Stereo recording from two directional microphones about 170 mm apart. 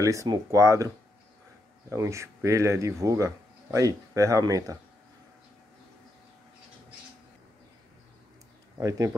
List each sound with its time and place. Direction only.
0.0 s speech: 20° right (ahead or behind)
8.7 s speech: 20° right (ahead or behind)